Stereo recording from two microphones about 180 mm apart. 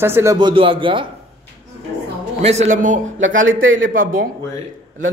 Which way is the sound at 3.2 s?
90° right.